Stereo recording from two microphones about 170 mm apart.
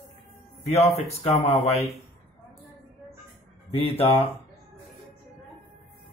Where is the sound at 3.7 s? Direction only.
35° left (ahead or behind).